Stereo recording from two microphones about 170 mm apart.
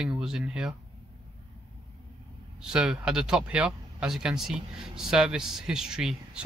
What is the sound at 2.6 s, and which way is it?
Speech, 5° right (ahead or behind).